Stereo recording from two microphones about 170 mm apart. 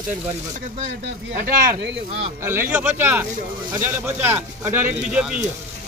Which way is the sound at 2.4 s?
15° right (ahead or behind).